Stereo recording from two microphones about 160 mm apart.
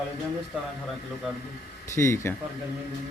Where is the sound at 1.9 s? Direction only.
15° left (ahead or behind).